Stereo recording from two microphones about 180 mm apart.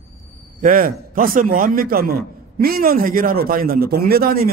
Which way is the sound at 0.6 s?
50° right (ahead or behind).